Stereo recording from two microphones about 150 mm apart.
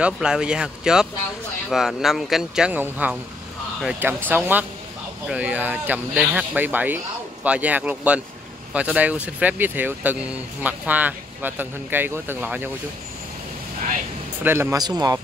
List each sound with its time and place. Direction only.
0.0 s speech: 5° right (ahead or behind)
14.4 s speech: 15° right (ahead or behind)
14.8 s a man's voice: 25° right (ahead or behind)